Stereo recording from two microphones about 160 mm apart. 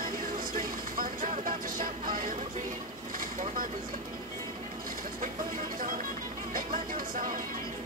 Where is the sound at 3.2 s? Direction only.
55° right (ahead or behind).